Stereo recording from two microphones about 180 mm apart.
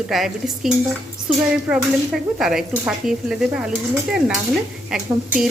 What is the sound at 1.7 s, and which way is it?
Speech, centre (ahead or behind).